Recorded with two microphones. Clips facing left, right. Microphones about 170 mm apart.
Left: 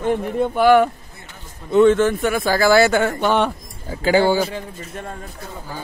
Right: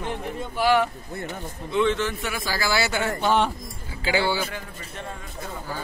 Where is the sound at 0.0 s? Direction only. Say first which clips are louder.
Left 11 dB; 55° left (ahead or behind).